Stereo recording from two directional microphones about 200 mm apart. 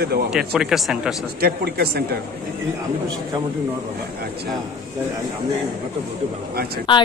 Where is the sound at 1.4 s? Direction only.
50° right (ahead or behind).